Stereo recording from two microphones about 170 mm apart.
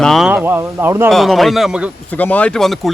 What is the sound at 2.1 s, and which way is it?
Speech, 10° left (ahead or behind).